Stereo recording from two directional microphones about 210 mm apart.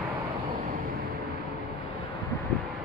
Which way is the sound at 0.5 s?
45° right (ahead or behind).